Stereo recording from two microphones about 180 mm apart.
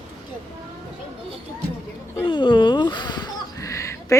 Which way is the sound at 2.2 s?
25° left (ahead or behind).